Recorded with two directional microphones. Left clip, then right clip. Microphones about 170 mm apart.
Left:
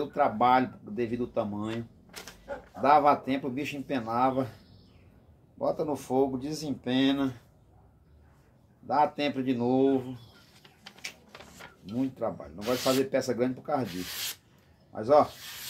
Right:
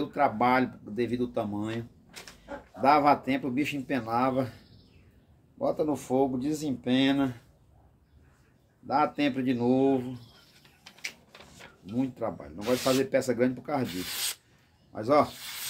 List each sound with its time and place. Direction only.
0.1 s speech: 20° right (ahead or behind)
2.8 s speech: 20° right (ahead or behind)
5.7 s speech: 20° right (ahead or behind)
8.8 s speech: 20° right (ahead or behind)
11.3 s shuffling cards: 10° left (ahead or behind)
12.0 s speech: 20° right (ahead or behind)
14.9 s speech: 20° right (ahead or behind)